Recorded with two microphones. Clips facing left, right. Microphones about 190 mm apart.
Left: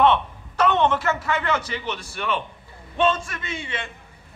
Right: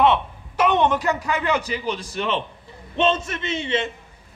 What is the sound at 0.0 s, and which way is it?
A man's voice, 10° right (ahead or behind).